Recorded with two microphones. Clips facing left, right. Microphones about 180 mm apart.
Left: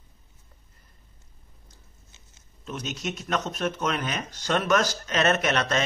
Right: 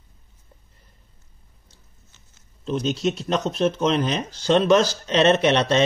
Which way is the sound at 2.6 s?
30° right (ahead or behind).